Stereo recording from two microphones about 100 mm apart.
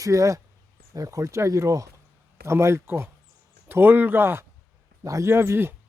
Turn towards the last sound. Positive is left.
turn(degrees=-25)  # may be behind; listen again after turning